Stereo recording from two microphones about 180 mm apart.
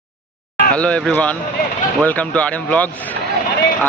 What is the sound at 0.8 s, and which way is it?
Speech, 5° left (ahead or behind).